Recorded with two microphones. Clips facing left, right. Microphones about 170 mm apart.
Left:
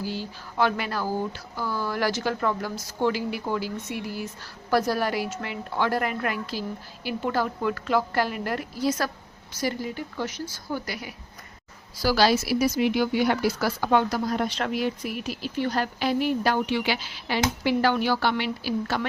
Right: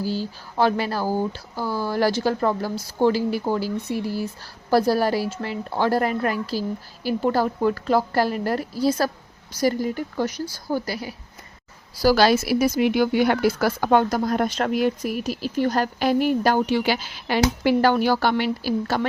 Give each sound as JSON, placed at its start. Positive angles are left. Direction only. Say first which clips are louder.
{"t": 0.0, "sound": "speech", "louder": "right 5 dB", "side_deg": -35}
{"t": 12.0, "sound": "speech", "louder": "right 4 dB", "side_deg": -50}